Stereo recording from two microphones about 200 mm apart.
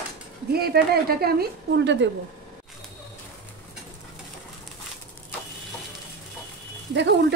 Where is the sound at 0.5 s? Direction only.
50° right (ahead or behind).